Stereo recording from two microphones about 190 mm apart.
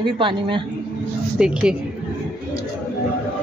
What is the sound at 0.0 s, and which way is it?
Speech, 25° right (ahead or behind).